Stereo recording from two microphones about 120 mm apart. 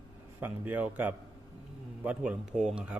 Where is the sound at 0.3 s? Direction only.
15° right (ahead or behind).